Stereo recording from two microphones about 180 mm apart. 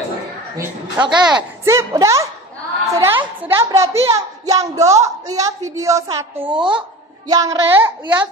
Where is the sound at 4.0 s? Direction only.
20° right (ahead or behind).